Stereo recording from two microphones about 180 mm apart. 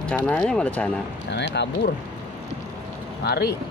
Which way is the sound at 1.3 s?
75° left (ahead or behind).